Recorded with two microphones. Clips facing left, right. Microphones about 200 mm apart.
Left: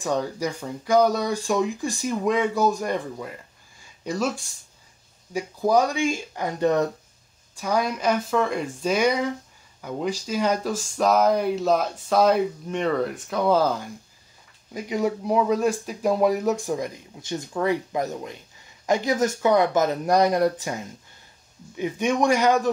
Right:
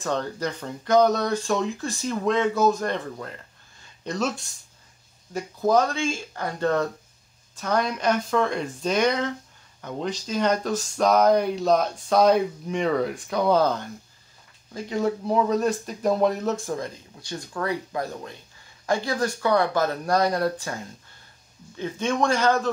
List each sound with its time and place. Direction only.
0.0 s speech: 10° left (ahead or behind)
14.7 s speech: 15° left (ahead or behind)